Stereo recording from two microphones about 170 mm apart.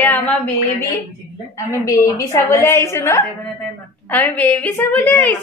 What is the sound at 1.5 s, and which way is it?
A woman's voice, 20° left (ahead or behind).